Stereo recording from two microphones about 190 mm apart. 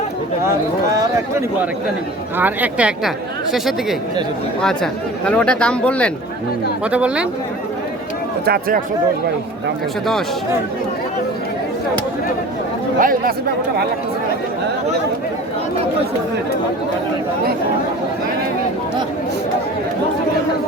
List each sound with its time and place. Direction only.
0.4 s speech: 15° right (ahead or behind); by 6.1 s 5° left (ahead or behind)
6.8 s speech: 5° right (ahead or behind)
8.4 s speech: 50° right (ahead or behind)
13.0 s speech: 50° right (ahead or behind)